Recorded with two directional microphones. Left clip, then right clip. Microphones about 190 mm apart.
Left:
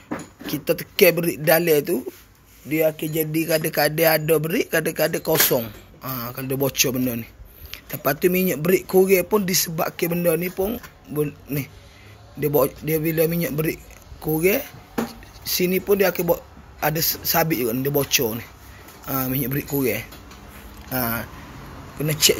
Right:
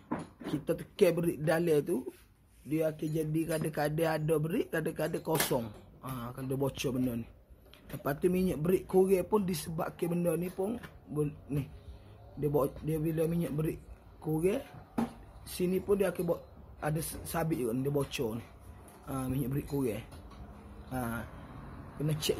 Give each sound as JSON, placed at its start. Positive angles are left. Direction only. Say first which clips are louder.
{"t": 0.7, "sound": "speech", "louder": "left 11 dB", "side_deg": 10}
{"t": 15.5, "sound": "speech", "louder": "left 11 dB", "side_deg": 10}